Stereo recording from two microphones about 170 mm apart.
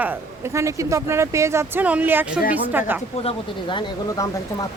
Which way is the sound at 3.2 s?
30° left (ahead or behind).